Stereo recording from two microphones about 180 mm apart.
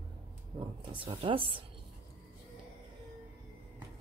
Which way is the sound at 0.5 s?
25° right (ahead or behind).